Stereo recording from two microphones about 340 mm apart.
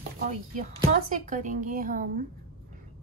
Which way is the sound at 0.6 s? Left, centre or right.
Right.